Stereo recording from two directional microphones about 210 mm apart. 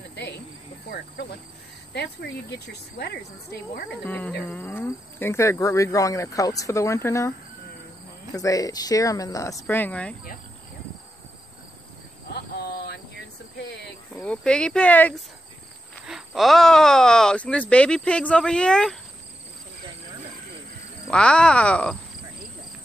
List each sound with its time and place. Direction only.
0.1 s cricket: 55° left (ahead or behind)
2.5 s speech: 50° left (ahead or behind)
3.9 s speech: 5° left (ahead or behind)
8.4 s speech: 15° left (ahead or behind)
12.3 s a sound: 50° left (ahead or behind)
14.1 s speech: 5° left (ahead or behind)
21.1 s speech: 5° left (ahead or behind)